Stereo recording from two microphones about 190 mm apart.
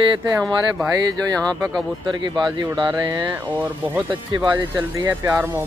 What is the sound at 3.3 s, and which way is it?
Speech, 10° right (ahead or behind).